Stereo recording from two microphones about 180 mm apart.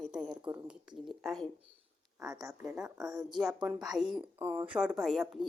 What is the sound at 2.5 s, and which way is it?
Speech, 5° right (ahead or behind).